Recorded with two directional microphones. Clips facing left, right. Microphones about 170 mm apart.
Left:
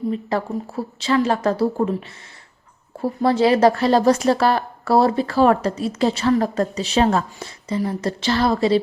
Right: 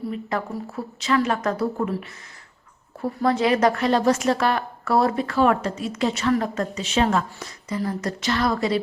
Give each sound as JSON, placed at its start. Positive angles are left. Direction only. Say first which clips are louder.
{"t": 0.1, "sound": "a woman's voice", "louder": "left 4 dB", "side_deg": 30}
{"t": 3.0, "sound": "a woman's voice", "louder": "left 4 dB", "side_deg": 30}